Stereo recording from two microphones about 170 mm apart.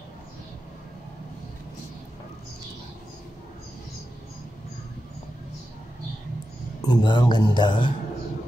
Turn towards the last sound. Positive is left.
turn(degrees=25)  # may be behind; listen again after turning